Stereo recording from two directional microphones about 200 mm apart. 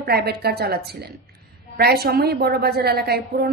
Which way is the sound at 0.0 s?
50° right (ahead or behind).